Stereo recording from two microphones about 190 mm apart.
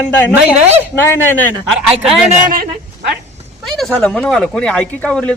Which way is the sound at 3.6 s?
Centre (ahead or behind).